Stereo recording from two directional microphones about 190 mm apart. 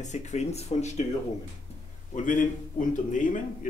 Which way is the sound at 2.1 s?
45° left (ahead or behind).